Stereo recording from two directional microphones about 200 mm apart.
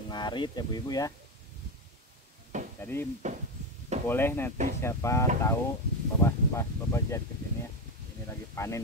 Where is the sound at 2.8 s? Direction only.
10° left (ahead or behind).